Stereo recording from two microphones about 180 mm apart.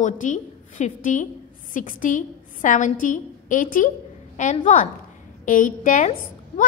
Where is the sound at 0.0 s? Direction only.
45° left (ahead or behind).